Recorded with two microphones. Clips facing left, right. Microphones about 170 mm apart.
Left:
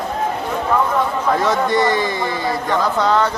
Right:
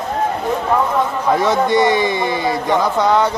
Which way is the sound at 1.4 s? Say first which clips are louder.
Right 4 dB; 15° right (ahead or behind).